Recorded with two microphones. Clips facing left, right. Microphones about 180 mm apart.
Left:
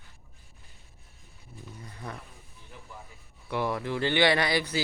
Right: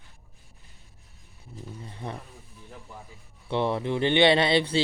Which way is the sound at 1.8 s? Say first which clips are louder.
Right 3 dB; 25° right (ahead or behind).